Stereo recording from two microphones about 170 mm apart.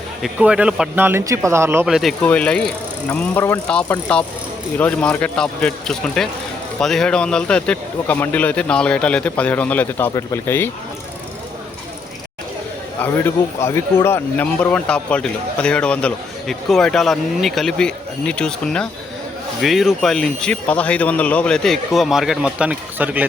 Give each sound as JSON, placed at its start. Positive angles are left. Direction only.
{"t": 0.2, "sound": "speech", "side_deg": -5}
{"t": 1.9, "sound": "a man's voice", "side_deg": 0}
{"t": 13.0, "sound": "speech", "side_deg": 15}